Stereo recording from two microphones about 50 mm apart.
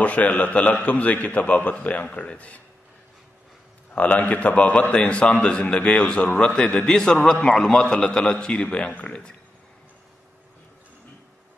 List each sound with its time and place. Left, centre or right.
0.0 s a man's voice: left
3.9 s a man's voice: left
7.6 s a man's voice: centre; by 9.1 s left